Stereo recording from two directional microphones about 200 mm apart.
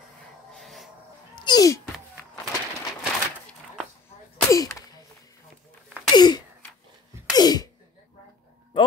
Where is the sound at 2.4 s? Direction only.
5° right (ahead or behind).